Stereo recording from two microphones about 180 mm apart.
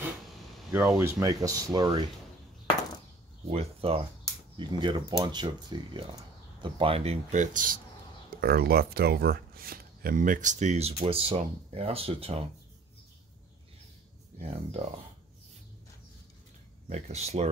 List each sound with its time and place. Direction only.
0.7 s speech: 10° right (ahead or behind)
3.4 s speech: 35° right (ahead or behind); by 7.8 s 50° right (ahead or behind)
8.4 s speech: 60° right (ahead or behind); by 12.4 s 35° right (ahead or behind)
14.4 s speech: 35° right (ahead or behind)
16.9 s speech: 35° right (ahead or behind)